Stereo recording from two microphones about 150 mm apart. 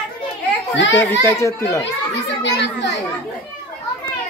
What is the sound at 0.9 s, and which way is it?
Speech, 15° left (ahead or behind).